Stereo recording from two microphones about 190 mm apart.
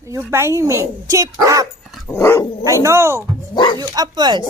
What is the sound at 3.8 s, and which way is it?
Speech, 20° right (ahead or behind).